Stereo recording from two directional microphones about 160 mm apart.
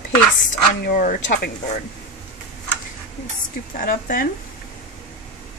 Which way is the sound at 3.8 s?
60° left (ahead or behind).